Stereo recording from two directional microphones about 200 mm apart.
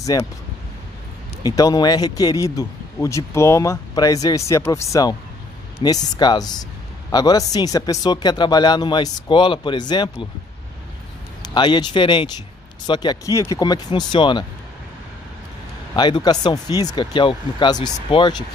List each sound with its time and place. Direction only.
0.0 s speech: 15° left (ahead or behind)
1.4 s a man's voice: 20° left (ahead or behind)
11.5 s a man's voice: 20° left (ahead or behind)
15.9 s a man's voice: 20° left (ahead or behind)